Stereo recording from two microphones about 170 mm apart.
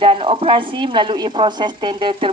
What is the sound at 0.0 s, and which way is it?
A woman's voice, 30° right (ahead or behind).